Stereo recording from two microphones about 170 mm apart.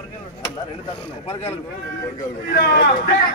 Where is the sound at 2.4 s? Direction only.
65° left (ahead or behind).